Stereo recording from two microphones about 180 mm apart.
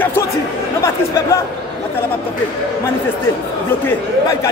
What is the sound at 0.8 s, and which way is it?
Chatter, 15° left (ahead or behind).